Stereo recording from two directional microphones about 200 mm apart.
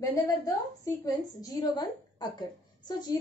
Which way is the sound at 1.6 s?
20° left (ahead or behind).